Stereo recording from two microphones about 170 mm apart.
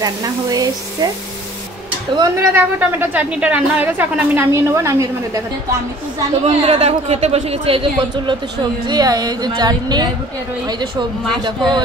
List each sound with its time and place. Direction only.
0.0 s speech: 20° right (ahead or behind)
2.1 s a woman's voice: 15° right (ahead or behind)
6.4 s speech: 40° right (ahead or behind)